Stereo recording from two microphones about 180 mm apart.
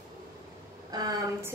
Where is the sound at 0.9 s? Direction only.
20° right (ahead or behind).